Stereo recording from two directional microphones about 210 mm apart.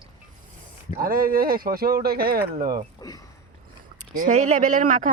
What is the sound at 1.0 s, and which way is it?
Speech, 45° right (ahead or behind).